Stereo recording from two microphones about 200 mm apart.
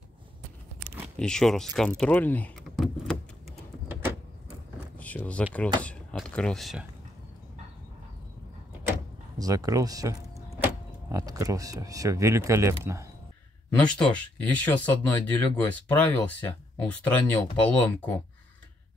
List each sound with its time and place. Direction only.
1.2 s speech: centre (ahead or behind)
4.9 s a sound: 5° left (ahead or behind)
5.8 s speech: 5° left (ahead or behind)
9.4 s speech: 15° right (ahead or behind)
13.7 s speech: 5° left (ahead or behind)